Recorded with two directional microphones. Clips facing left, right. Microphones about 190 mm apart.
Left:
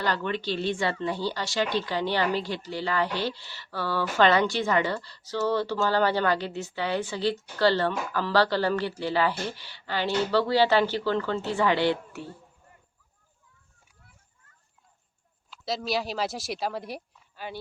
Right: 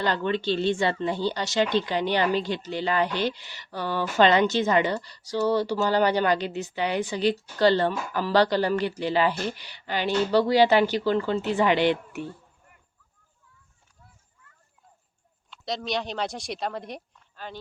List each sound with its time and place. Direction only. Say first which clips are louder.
0.0 s speech: right 3 dB; 25° right (ahead or behind)
15.4 s speech: even; centre (ahead or behind)